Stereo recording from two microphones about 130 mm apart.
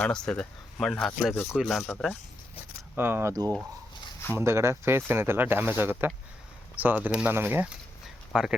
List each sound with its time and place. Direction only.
0.0 s speech: 5° left (ahead or behind)
2.9 s speech: 15° right (ahead or behind)
8.0 s a sound: 5° right (ahead or behind)